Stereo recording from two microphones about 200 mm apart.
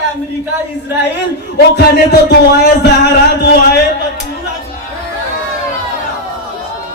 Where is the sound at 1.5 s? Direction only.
55° left (ahead or behind).